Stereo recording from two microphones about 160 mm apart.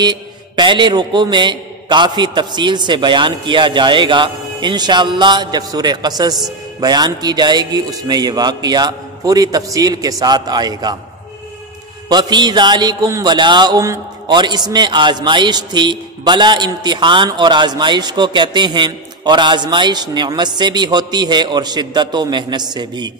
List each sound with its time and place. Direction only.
0.0 s speech: 30° right (ahead or behind)
12.1 s speech: 25° right (ahead or behind)